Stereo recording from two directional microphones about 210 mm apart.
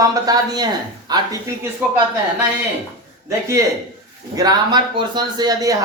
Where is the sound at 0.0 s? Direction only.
15° right (ahead or behind).